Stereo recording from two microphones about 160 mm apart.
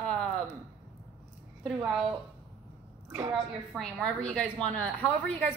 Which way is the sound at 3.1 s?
15° right (ahead or behind).